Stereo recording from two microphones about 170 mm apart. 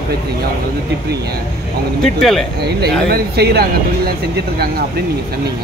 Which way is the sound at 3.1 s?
70° right (ahead or behind).